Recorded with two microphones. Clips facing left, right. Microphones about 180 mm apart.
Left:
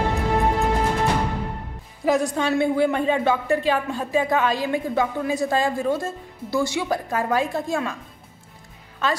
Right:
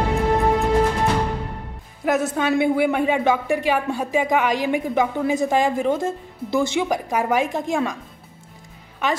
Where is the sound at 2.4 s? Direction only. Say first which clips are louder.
Right 1 dB; 10° right (ahead or behind).